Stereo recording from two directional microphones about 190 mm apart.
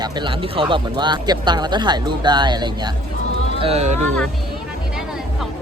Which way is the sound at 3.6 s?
35° right (ahead or behind).